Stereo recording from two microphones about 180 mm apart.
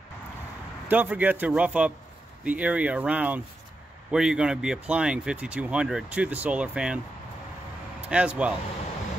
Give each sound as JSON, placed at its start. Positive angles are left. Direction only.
{"t": 0.8, "sound": "a man's voice", "side_deg": -10}
{"t": 8.1, "sound": "a man's voice", "side_deg": -5}